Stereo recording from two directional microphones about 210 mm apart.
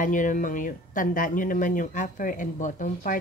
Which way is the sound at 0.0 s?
35° left (ahead or behind).